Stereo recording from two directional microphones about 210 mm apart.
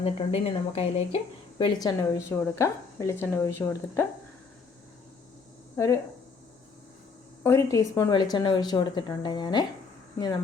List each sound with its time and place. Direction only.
0.0 s a woman's voice: 30° left (ahead or behind); by 4.0 s 10° left (ahead or behind)
5.7 s speech: 15° left (ahead or behind)
7.4 s speech: 15° left (ahead or behind)